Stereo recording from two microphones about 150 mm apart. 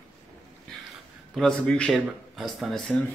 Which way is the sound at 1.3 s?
5° left (ahead or behind).